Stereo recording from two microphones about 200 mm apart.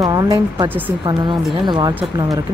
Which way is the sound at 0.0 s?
20° right (ahead or behind).